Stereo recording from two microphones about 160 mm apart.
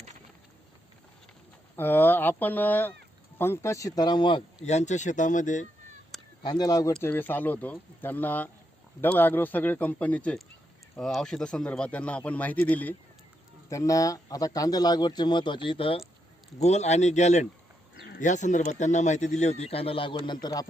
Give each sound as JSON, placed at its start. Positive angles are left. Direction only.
{"t": 1.7, "sound": "speech", "side_deg": 15}
{"t": 4.6, "sound": "speech", "side_deg": 45}
{"t": 6.4, "sound": "speech", "side_deg": 25}
{"t": 17.9, "sound": "a sound", "side_deg": 90}
{"t": 18.2, "sound": "speech", "side_deg": 50}